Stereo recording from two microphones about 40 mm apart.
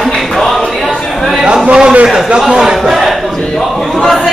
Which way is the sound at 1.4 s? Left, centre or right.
Right.